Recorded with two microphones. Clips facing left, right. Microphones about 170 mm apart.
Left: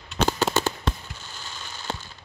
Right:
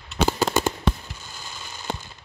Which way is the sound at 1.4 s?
10° right (ahead or behind).